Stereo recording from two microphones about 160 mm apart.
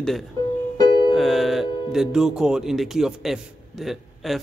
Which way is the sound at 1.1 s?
Centre (ahead or behind).